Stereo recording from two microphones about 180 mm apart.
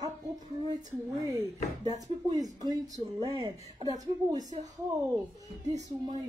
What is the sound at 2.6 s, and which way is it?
Speech, 20° right (ahead or behind).